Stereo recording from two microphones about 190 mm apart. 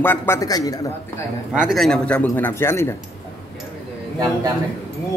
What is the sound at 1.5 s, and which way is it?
A man's voice, centre (ahead or behind).